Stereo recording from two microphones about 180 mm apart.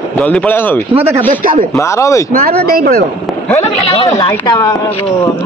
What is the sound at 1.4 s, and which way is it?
Speech, 50° right (ahead or behind).